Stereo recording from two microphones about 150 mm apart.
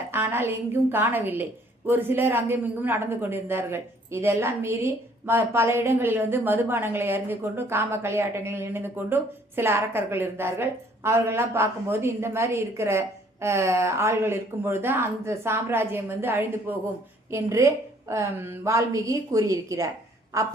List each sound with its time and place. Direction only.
0.1 s a woman's voice: 15° right (ahead or behind)